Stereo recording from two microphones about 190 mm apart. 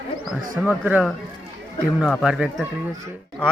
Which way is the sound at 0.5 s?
5° right (ahead or behind).